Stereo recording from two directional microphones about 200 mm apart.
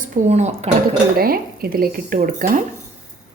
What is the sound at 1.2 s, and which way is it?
A woman's voice, 45° right (ahead or behind).